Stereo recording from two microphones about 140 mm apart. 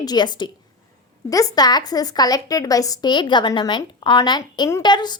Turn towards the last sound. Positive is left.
turn(degrees=30)  # may be behind; listen again after turning